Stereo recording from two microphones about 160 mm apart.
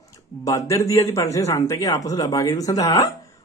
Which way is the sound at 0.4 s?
20° left (ahead or behind).